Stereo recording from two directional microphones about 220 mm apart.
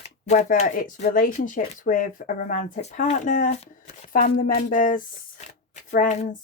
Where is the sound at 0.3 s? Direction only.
30° left (ahead or behind).